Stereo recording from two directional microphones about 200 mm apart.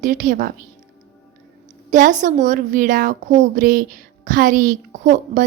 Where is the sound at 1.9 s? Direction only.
40° right (ahead or behind).